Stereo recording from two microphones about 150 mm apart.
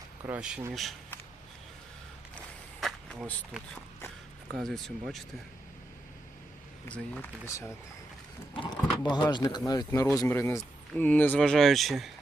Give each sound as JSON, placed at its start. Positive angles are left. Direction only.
{"t": 0.3, "sound": "speech", "side_deg": -5}
{"t": 2.8, "sound": "a sound", "side_deg": 5}
{"t": 4.6, "sound": "speech", "side_deg": 0}
{"t": 6.9, "sound": "speech", "side_deg": 10}
{"t": 8.5, "sound": "speech", "side_deg": 30}